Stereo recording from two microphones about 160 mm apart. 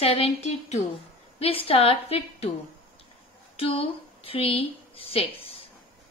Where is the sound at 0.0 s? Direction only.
35° left (ahead or behind).